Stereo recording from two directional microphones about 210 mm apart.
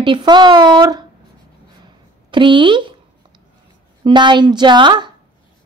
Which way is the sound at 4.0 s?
20° right (ahead or behind).